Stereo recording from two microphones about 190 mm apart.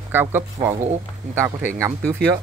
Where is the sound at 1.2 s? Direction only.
40° right (ahead or behind).